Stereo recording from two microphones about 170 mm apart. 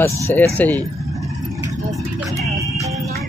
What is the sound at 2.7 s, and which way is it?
Music, 20° right (ahead or behind).